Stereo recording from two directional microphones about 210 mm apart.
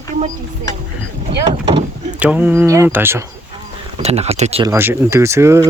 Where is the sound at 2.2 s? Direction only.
5° right (ahead or behind).